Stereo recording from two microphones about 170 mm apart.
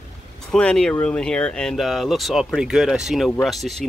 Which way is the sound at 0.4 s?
5° left (ahead or behind).